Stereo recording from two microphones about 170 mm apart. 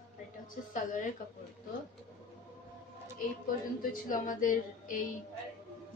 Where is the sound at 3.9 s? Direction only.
50° left (ahead or behind).